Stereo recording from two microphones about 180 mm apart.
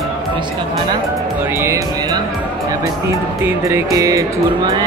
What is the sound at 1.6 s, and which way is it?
Music, 15° right (ahead or behind).